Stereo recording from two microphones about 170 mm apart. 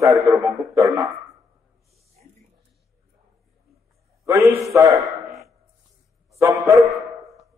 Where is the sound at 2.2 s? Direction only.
50° right (ahead or behind).